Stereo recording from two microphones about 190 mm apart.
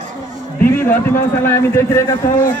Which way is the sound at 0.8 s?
10° left (ahead or behind).